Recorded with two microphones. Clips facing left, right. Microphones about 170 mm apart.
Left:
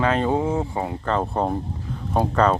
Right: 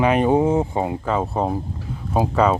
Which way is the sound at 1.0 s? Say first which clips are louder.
Right 1 dB; 5° right (ahead or behind).